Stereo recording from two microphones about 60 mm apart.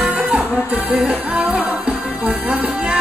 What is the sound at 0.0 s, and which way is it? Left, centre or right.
Music, centre.